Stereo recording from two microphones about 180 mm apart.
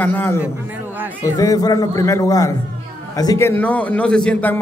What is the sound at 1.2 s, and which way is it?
A man's voice, 20° left (ahead or behind).